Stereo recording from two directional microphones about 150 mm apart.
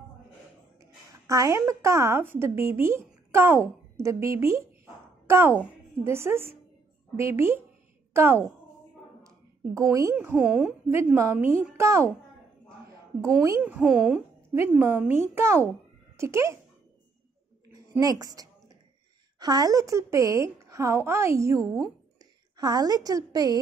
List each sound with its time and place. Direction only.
1.2 s a woman's voice: 20° right (ahead or behind)
9.8 s a woman's voice: 20° right (ahead or behind)
10.1 s a woman's voice: 10° right (ahead or behind)
13.2 s a woman's voice: 20° right (ahead or behind)
13.6 s speech: 10° right (ahead or behind)
14.5 s a woman's voice: 15° right (ahead or behind)
18.0 s a woman's voice: 25° right (ahead or behind)